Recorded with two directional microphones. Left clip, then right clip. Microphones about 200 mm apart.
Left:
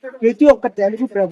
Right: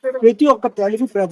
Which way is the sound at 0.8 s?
20° right (ahead or behind).